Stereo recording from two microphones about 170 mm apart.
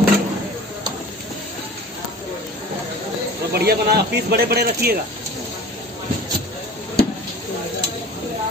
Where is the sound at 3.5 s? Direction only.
70° right (ahead or behind).